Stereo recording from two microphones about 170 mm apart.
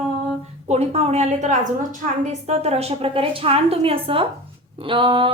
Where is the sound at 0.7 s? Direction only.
40° right (ahead or behind).